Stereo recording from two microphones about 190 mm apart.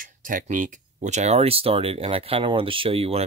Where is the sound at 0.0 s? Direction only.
45° right (ahead or behind).